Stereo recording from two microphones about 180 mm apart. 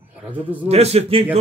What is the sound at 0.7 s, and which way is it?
Speech, 35° right (ahead or behind).